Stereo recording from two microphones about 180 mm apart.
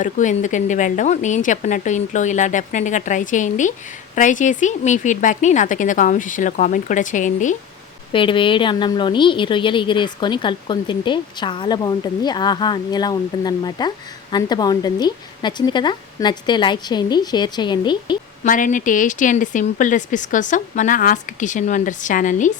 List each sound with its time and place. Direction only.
0.0 s a woman's voice: 45° left (ahead or behind)
8.1 s a woman's voice: 30° left (ahead or behind)
18.4 s a woman's voice: 45° left (ahead or behind)